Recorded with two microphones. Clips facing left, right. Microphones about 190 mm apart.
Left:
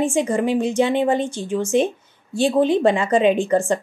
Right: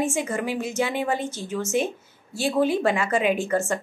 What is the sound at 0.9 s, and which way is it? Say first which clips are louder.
Speech: left 7 dB; 20° left (ahead or behind).